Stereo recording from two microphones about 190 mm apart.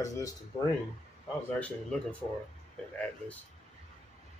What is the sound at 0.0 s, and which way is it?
Speech, 15° left (ahead or behind).